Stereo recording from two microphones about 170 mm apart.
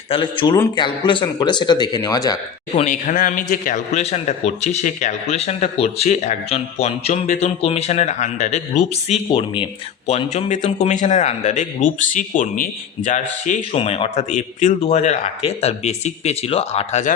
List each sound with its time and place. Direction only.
0.1 s speech: 30° left (ahead or behind)
2.7 s a man's voice: 45° left (ahead or behind)
13.6 s speech: 35° left (ahead or behind)